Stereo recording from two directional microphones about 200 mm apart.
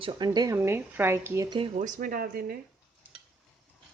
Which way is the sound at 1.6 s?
40° right (ahead or behind).